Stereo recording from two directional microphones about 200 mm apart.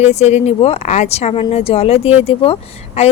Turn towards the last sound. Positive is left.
turn(degrees=30)  # may be behind; listen again after turning